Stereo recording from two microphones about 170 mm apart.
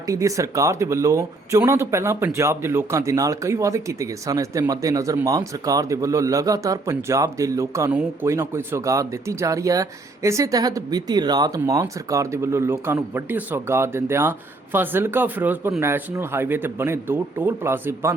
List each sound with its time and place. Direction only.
0.1 s speech: 20° right (ahead or behind)